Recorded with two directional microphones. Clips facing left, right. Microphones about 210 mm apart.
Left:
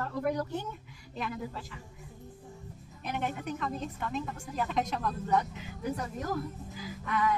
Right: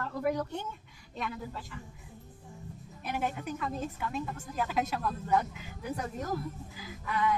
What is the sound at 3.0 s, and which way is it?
A woman's voice, 5° right (ahead or behind).